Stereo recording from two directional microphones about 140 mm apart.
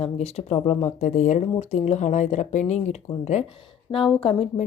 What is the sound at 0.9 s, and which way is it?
Speech, 60° left (ahead or behind).